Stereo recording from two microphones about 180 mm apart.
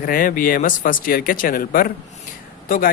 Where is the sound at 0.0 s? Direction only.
50° left (ahead or behind).